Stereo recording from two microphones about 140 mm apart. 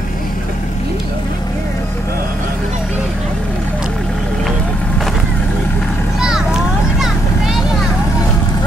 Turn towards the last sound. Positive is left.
turn(degrees=0)  # may be behind; listen again after turning